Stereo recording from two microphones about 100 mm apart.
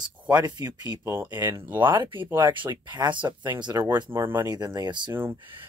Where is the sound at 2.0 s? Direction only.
60° right (ahead or behind); by 3.9 s 40° right (ahead or behind).